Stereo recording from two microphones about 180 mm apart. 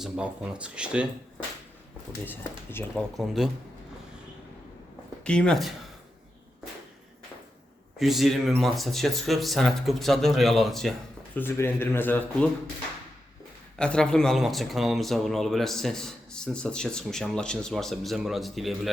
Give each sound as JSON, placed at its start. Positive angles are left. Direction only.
{"t": 0.0, "sound": "speech", "side_deg": -5}
{"t": 2.9, "sound": "speech", "side_deg": 0}
{"t": 5.2, "sound": "speech", "side_deg": 5}
{"t": 7.9, "sound": "speech", "side_deg": 0}
{"t": 11.3, "sound": "speech", "side_deg": 10}
{"t": 13.7, "sound": "speech", "side_deg": 5}